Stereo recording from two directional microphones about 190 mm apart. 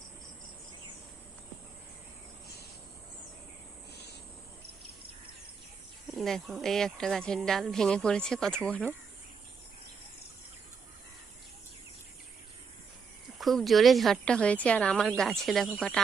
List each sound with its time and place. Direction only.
6.1 s a woman's voice: centre (ahead or behind)
13.4 s a woman's voice: centre (ahead or behind)